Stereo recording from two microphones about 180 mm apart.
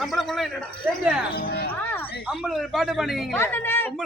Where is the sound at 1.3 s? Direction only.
60° left (ahead or behind).